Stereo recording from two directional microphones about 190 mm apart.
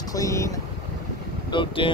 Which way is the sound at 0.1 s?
15° left (ahead or behind).